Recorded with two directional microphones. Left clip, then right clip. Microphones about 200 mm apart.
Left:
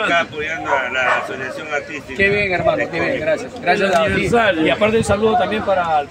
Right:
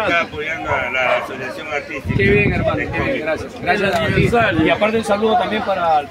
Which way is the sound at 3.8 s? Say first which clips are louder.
Left 2 dB; 5° left (ahead or behind).